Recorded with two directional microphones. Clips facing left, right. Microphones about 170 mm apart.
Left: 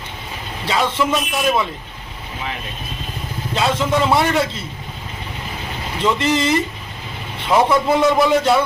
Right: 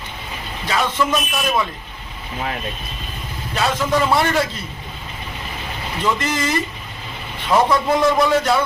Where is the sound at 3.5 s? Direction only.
20° left (ahead or behind).